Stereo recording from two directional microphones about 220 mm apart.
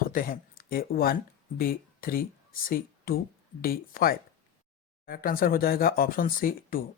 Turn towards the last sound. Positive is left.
turn(degrees=40)  # may be behind; listen again after turning